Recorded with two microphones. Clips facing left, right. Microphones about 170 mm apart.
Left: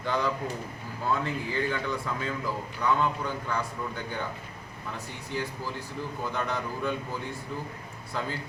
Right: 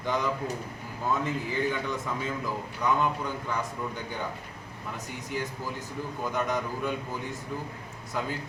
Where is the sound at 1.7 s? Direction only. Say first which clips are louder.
Even; 20° right (ahead or behind).